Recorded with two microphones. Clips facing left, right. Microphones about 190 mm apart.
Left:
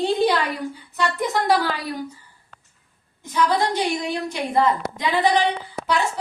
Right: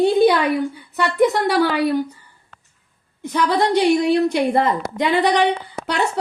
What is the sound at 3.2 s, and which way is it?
A woman's voice, 65° right (ahead or behind).